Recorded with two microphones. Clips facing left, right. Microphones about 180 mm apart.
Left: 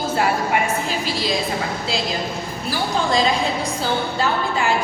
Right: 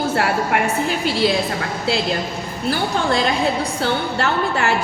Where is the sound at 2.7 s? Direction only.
60° right (ahead or behind).